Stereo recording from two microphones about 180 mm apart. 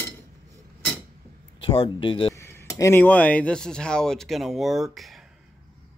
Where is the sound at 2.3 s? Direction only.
15° left (ahead or behind).